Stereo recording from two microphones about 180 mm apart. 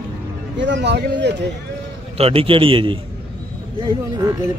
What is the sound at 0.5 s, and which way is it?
Speech, 80° right.